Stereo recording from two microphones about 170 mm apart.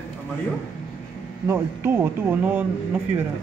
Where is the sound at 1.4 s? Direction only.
15° right (ahead or behind).